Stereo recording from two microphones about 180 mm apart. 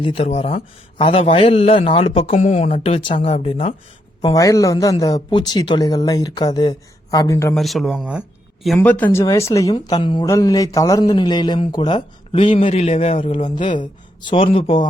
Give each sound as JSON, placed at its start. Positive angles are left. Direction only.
{"t": 0.0, "sound": "a man's voice", "side_deg": 30}
{"t": 4.4, "sound": "speech", "side_deg": 20}
{"t": 7.5, "sound": "speech", "side_deg": 0}